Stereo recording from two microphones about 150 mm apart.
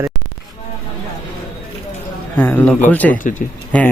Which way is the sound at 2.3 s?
10° left (ahead or behind).